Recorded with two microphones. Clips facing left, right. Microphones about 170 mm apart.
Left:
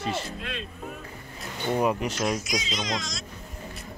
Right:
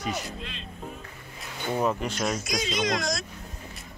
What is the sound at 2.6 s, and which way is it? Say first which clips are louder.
Speech: right 4 dB; 65° right (ahead or behind).